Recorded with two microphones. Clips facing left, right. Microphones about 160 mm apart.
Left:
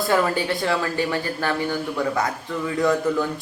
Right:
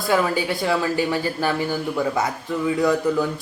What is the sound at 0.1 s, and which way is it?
A man's voice, 5° right (ahead or behind).